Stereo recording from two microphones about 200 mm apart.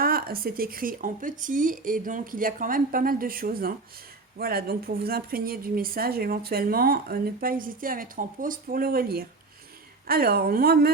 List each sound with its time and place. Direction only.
0.0 s a woman's voice: 50° right (ahead or behind)